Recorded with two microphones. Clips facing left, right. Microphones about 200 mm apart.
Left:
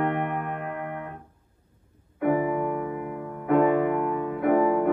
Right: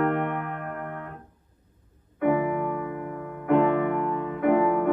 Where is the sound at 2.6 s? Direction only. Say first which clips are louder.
Left 1 dB; 10° left (ahead or behind).